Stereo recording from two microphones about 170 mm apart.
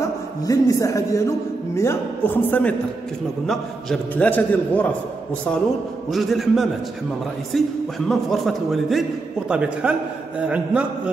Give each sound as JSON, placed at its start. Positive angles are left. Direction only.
{"t": 0.5, "sound": "a man's voice", "side_deg": 20}
{"t": 6.0, "sound": "a man's voice", "side_deg": 0}